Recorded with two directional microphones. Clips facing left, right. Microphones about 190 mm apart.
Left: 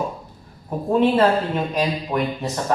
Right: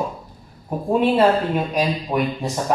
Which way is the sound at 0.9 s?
10° right (ahead or behind).